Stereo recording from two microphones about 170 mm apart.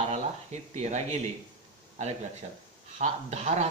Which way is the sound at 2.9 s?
40° right (ahead or behind).